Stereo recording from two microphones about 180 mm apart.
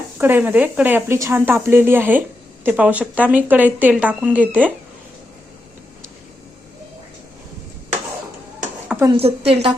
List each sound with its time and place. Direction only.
0.2 s speech: 10° right (ahead or behind)
8.9 s a sound: 15° right (ahead or behind)
9.1 s a woman's voice: 35° right (ahead or behind)